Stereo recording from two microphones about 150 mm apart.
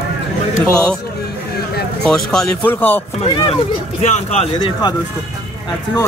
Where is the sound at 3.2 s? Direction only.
35° left (ahead or behind).